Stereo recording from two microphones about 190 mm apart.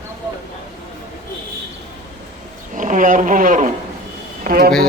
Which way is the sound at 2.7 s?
45° right (ahead or behind).